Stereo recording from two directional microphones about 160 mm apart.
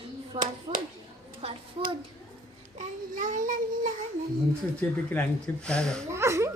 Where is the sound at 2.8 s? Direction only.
55° right (ahead or behind).